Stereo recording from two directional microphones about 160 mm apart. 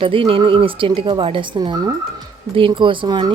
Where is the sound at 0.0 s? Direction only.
35° right (ahead or behind).